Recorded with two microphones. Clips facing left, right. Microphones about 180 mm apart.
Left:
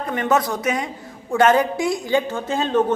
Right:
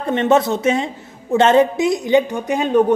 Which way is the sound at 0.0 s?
25° right (ahead or behind).